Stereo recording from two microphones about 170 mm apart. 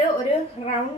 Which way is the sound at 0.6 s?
35° left (ahead or behind).